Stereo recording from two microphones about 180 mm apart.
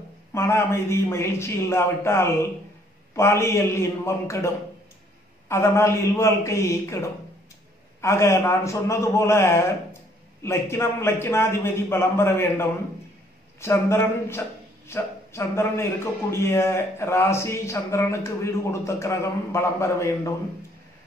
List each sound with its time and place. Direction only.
0.3 s a man's voice: 15° left (ahead or behind)